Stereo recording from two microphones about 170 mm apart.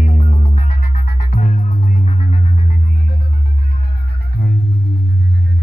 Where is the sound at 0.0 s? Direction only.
45° left (ahead or behind).